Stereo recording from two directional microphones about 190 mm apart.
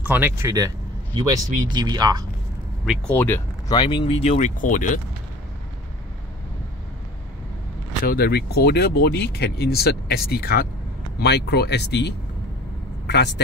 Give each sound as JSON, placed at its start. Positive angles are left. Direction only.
{"t": 0.0, "sound": "speech", "side_deg": -10}
{"t": 2.8, "sound": "speech", "side_deg": 5}
{"t": 3.7, "sound": "speech", "side_deg": 25}
{"t": 8.0, "sound": "speech", "side_deg": 50}